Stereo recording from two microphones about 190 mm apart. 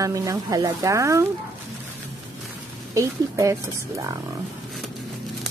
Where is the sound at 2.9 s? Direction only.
15° right (ahead or behind).